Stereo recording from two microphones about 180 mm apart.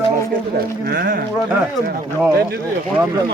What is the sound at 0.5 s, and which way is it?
Speech, 60° right (ahead or behind).